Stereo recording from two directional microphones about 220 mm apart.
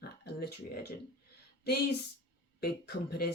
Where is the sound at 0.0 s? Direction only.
45° left (ahead or behind).